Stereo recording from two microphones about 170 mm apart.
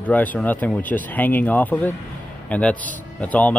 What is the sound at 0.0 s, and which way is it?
Speech, 10° left (ahead or behind).